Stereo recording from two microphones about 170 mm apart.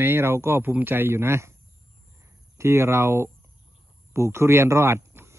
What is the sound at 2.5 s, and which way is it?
Speech, 15° right (ahead or behind).